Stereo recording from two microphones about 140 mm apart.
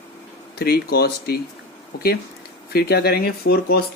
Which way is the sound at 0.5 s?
90° left.